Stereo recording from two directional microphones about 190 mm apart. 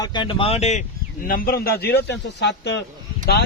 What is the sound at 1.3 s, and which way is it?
A man's voice, 50° left (ahead or behind).